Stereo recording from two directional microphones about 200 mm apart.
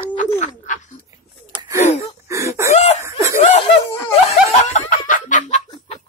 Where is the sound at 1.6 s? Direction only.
15° right (ahead or behind).